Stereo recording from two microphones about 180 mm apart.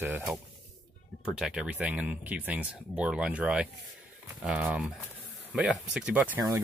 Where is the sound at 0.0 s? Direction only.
10° right (ahead or behind).